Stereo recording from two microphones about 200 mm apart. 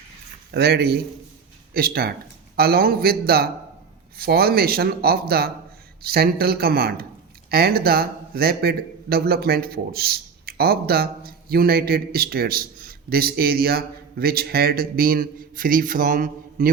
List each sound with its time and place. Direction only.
0.5 s a man's voice: 50° right (ahead or behind)